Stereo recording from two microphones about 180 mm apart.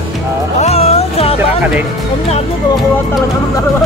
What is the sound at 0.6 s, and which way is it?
Speech, 35° left (ahead or behind).